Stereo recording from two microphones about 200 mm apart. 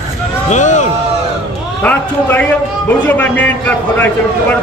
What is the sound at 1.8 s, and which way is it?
A man's voice, 10° left (ahead or behind).